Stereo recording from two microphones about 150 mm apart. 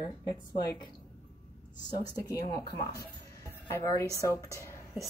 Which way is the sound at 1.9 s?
25° left (ahead or behind).